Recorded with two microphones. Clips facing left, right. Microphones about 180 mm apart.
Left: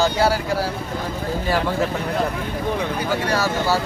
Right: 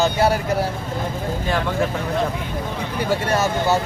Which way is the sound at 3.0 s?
25° right (ahead or behind).